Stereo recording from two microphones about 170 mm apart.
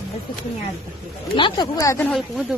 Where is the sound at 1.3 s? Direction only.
25° left (ahead or behind).